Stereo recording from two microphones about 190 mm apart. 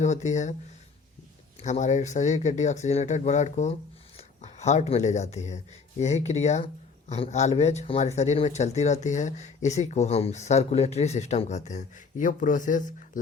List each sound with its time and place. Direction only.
0.0 s speech: 40° left (ahead or behind)
1.6 s speech: 40° left (ahead or behind)